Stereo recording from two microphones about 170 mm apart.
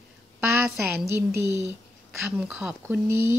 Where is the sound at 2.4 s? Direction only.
10° right (ahead or behind).